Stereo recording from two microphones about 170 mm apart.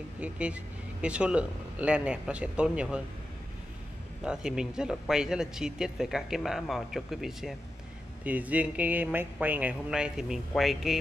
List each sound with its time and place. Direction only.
0.2 s a man's voice: 5° right (ahead or behind)
4.2 s a man's voice: 5° right (ahead or behind)